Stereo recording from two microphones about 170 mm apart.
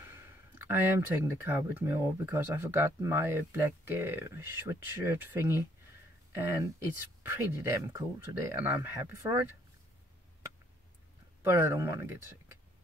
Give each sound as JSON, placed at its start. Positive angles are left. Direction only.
{"t": 0.0, "sound": "speech", "side_deg": -10}
{"t": 11.4, "sound": "speech", "side_deg": -15}